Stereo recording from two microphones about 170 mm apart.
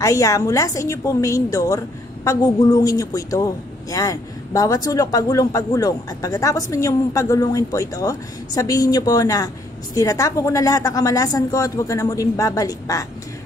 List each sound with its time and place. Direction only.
0.0 s a man's voice: 20° left (ahead or behind)